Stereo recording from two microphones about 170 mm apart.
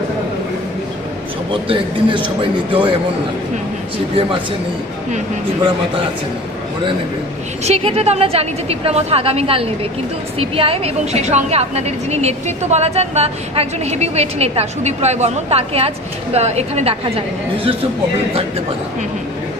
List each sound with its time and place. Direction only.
1.5 s a man's voice: 30° right (ahead or behind)
7.6 s a woman's voice: 35° right (ahead or behind)